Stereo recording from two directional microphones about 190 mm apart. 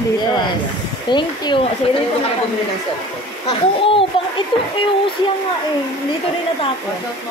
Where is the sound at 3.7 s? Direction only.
30° left (ahead or behind).